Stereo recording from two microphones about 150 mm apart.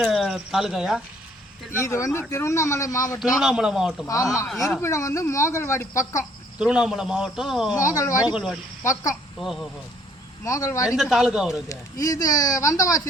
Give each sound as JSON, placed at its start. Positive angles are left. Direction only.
{"t": 0.1, "sound": "speech", "side_deg": 0}
{"t": 1.8, "sound": "speech", "side_deg": 20}
{"t": 3.4, "sound": "a man's voice", "side_deg": -5}
{"t": 4.0, "sound": "speech", "side_deg": 20}
{"t": 6.6, "sound": "a man's voice", "side_deg": -5}
{"t": 7.8, "sound": "speech", "side_deg": 20}
{"t": 8.2, "sound": "speech", "side_deg": -5}
{"t": 8.8, "sound": "speech", "side_deg": 20}
{"t": 9.4, "sound": "a man's voice", "side_deg": 0}
{"t": 10.4, "sound": "speech", "side_deg": 20}
{"t": 10.8, "sound": "a man's voice", "side_deg": 0}
{"t": 11.7, "sound": "speech", "side_deg": 20}